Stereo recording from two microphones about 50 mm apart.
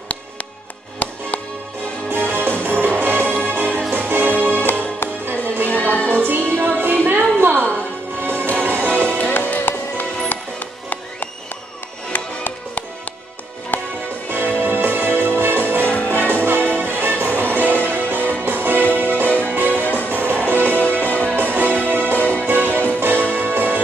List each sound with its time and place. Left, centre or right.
1.0 s music: left
2.0 s music: right
5.7 s music: left
6.0 s music: right
7.5 s music: left
8.2 s music: right
9.3 s music: left
14.6 s music: right
15.8 s music: left
16.3 s music: right